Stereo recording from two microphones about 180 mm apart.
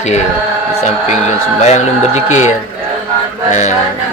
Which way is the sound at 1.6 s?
40° left (ahead or behind).